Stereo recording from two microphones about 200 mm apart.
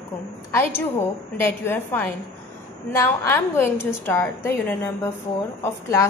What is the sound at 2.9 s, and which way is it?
A woman's voice, 15° left (ahead or behind).